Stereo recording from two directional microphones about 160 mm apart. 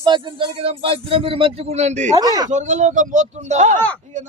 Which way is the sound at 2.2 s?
25° right (ahead or behind).